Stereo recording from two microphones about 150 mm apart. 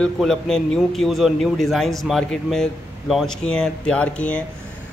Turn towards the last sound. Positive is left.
turn(degrees=10)  # may be behind; listen again after turning